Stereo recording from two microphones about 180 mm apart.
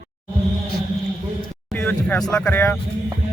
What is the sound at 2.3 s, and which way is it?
Speech, 10° left (ahead or behind).